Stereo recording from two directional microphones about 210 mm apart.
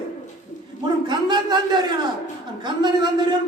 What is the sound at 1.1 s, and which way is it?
Speech, 20° right (ahead or behind).